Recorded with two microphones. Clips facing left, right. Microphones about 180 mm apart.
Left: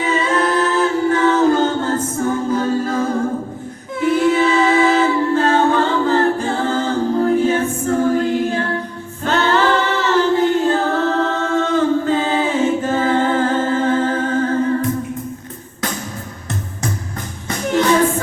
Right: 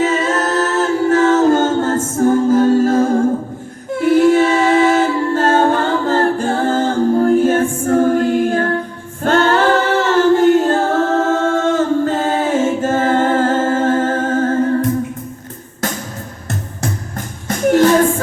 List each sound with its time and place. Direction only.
0.0 s a capella: 45° right (ahead or behind)
2.1 s music: 45° right (ahead or behind)
4.0 s a capella: 45° right (ahead or behind)
17.7 s a sound: 45° right (ahead or behind)